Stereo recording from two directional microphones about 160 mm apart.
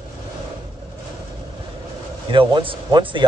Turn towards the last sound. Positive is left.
turn(degrees=-30)  # may be behind; listen again after turning